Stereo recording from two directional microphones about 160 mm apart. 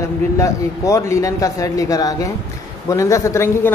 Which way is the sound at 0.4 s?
20° left (ahead or behind).